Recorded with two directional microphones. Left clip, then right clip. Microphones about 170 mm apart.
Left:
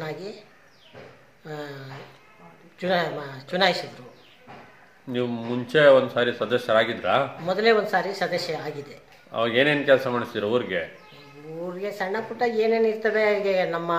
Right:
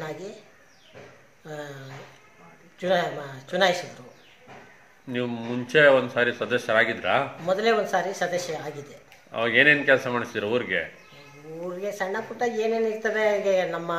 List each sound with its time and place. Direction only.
0.0 s speech: 15° left (ahead or behind)
1.4 s a man's voice: 15° left (ahead or behind)
2.8 s a man's voice: 15° left (ahead or behind)
5.1 s a man's voice: 10° left (ahead or behind)